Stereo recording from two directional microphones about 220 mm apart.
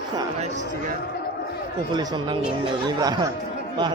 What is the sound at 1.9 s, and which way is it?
Speech, 20° right (ahead or behind).